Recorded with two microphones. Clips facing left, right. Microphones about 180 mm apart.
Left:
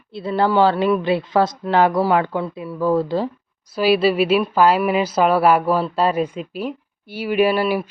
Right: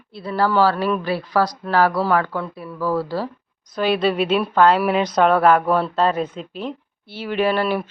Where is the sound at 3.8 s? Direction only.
5° left (ahead or behind).